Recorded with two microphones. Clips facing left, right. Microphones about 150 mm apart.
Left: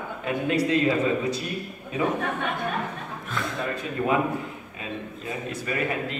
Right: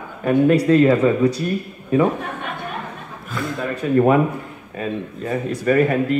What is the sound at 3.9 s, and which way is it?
Speech, 50° right (ahead or behind).